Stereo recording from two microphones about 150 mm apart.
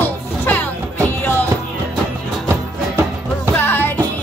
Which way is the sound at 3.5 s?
15° left (ahead or behind).